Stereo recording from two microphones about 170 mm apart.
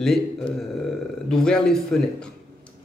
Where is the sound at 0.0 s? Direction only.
Centre (ahead or behind).